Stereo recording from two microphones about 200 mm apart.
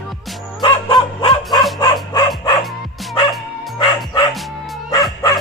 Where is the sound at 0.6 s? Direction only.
25° left (ahead or behind).